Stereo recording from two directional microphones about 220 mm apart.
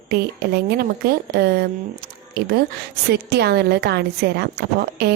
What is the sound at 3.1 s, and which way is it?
A woman's voice, 50° right (ahead or behind).